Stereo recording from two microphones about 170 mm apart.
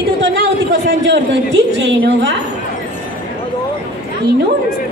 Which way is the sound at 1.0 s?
90° right.